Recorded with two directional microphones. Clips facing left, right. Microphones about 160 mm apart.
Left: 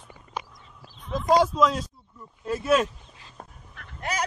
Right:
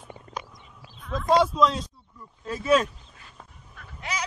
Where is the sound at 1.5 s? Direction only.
Centre (ahead or behind).